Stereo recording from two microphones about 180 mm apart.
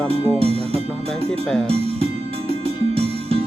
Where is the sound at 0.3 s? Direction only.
35° right (ahead or behind).